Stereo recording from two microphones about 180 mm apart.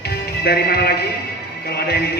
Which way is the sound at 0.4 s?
60° left (ahead or behind).